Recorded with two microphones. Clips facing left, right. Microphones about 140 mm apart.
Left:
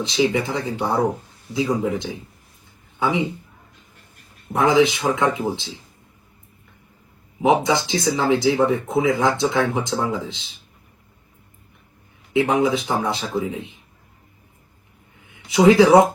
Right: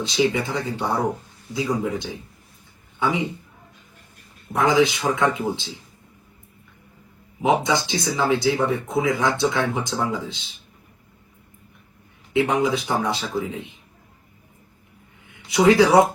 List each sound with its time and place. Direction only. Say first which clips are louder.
0.1 s speech: left 1 dB; 25° left (ahead or behind)
4.5 s speech: left 2 dB; 25° left (ahead or behind)
7.7 s speech: left 3 dB; 25° left (ahead or behind)
12.4 s speech: left 2 dB; 25° left (ahead or behind)
15.5 s speech: left 3 dB; 25° left (ahead or behind)